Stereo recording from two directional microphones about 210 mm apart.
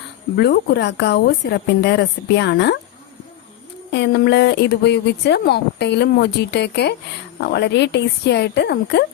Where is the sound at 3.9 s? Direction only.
55° left (ahead or behind).